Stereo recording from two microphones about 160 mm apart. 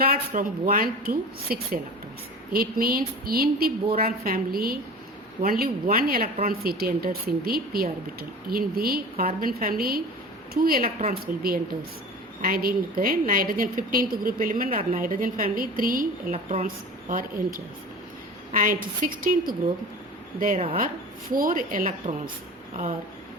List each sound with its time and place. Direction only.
0.0 s a woman's voice: 65° right (ahead or behind)
16.3 s a woman's voice: 45° right (ahead or behind)
16.6 s a woman's voice: 60° right (ahead or behind)
21.2 s a woman's voice: 60° right (ahead or behind)